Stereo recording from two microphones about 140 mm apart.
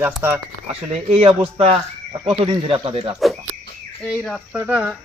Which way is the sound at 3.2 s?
Centre (ahead or behind).